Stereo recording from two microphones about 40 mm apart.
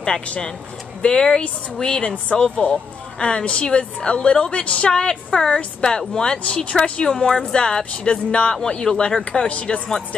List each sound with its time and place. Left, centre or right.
1.0 s a woman's voice: centre
6.4 s speech: left
7.2 s a woman's voice: centre